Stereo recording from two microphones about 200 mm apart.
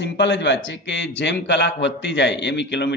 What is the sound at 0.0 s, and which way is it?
A man's voice, 60° left (ahead or behind).